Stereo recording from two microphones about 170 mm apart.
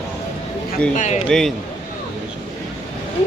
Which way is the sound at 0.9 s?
40° left (ahead or behind).